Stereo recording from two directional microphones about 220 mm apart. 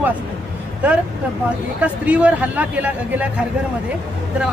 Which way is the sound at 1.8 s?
5° right (ahead or behind).